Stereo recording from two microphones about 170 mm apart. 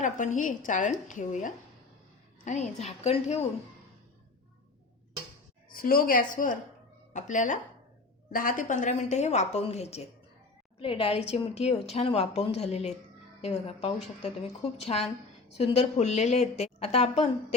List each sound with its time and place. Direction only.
0.0 s a woman's voice: 50° left (ahead or behind)
5.7 s a woman's voice: 60° left (ahead or behind); by 17.2 s 40° left (ahead or behind)